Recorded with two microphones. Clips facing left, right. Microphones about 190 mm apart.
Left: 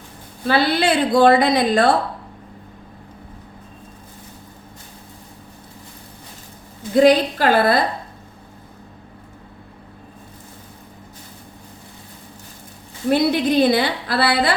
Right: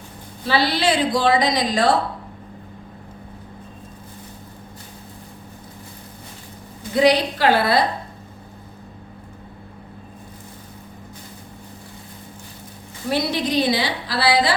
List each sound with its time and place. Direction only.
0.4 s a woman's voice: 55° left (ahead or behind)
6.9 s a woman's voice: 50° left (ahead or behind)
13.1 s a woman's voice: 55° left (ahead or behind)